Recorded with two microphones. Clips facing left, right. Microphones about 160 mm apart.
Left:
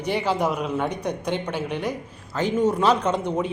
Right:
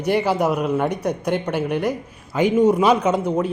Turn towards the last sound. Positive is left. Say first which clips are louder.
# right 4 dB
turn(degrees=-5)  # may be behind; listen again after turning